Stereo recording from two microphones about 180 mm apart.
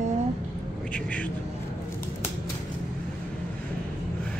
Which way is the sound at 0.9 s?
5° left (ahead or behind).